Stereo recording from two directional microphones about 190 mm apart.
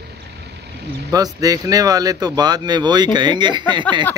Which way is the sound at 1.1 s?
20° right (ahead or behind).